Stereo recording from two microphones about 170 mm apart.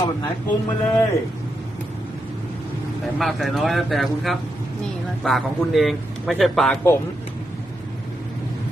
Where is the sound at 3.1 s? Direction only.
Centre (ahead or behind).